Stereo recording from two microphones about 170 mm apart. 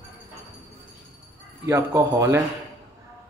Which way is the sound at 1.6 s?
15° right (ahead or behind).